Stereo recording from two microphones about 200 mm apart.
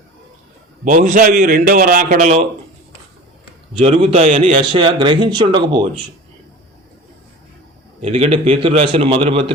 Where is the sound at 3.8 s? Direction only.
30° right (ahead or behind).